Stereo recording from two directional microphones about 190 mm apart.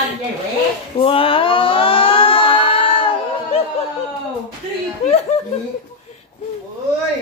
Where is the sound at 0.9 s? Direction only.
30° left (ahead or behind).